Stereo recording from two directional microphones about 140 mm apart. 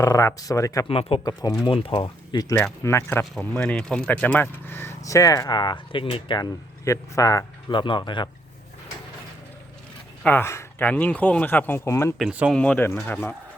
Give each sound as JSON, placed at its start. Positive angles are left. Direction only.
{"t": 0.0, "sound": "speech", "side_deg": 25}
{"t": 0.9, "sound": "speech", "side_deg": 45}
{"t": 1.2, "sound": "speech", "side_deg": 25}
{"t": 1.6, "sound": "speech", "side_deg": 40}
{"t": 2.8, "sound": "speech", "side_deg": 20}
{"t": 6.8, "sound": "speech", "side_deg": 25}
{"t": 10.2, "sound": "speech", "side_deg": 15}
{"t": 12.3, "sound": "speech", "side_deg": -10}
{"t": 12.5, "sound": "speech", "side_deg": 10}